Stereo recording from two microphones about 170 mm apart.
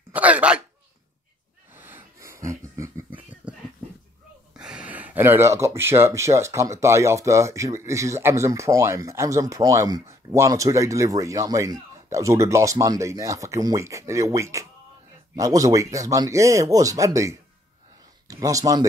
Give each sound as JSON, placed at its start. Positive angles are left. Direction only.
{"t": 0.1, "sound": "speech", "side_deg": -10}
{"t": 1.7, "sound": "wheeze", "side_deg": -10}
{"t": 3.4, "sound": "dog", "side_deg": -10}
{"t": 4.6, "sound": "a sound", "side_deg": -5}
{"t": 5.8, "sound": "speech", "side_deg": -15}